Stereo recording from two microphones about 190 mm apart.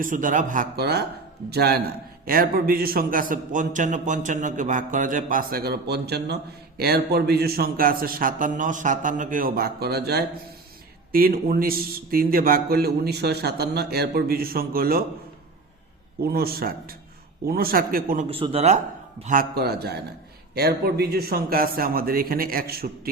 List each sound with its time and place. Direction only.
0.0 s a man's voice: 45° right (ahead or behind)
16.2 s a man's voice: 55° right (ahead or behind)
18.3 s speech: 30° right (ahead or behind)
19.2 s a man's voice: 45° right (ahead or behind)